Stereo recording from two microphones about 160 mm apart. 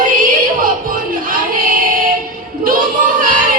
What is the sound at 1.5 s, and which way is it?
Female singing, 60° right (ahead or behind).